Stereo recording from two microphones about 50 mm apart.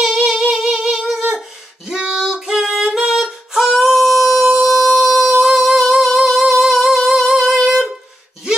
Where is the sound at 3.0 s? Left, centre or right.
Centre.